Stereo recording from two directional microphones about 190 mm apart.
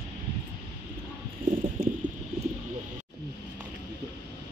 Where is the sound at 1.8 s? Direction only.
45° right (ahead or behind).